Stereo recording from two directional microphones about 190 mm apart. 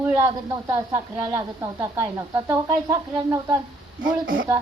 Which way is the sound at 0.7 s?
15° right (ahead or behind).